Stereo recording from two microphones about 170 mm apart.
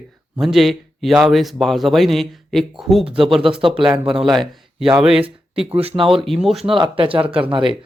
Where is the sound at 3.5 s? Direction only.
30° right (ahead or behind).